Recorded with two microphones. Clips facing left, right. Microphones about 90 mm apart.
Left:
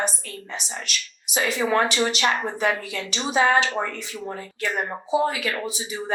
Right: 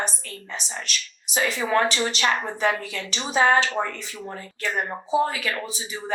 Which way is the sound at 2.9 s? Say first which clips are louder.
Left 2 dB; 30° left (ahead or behind).